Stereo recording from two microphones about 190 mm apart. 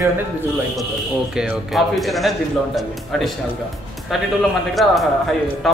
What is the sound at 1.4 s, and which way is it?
Speech, centre (ahead or behind).